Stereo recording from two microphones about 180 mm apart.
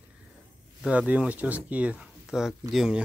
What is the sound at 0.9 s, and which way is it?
Speech, 10° right (ahead or behind).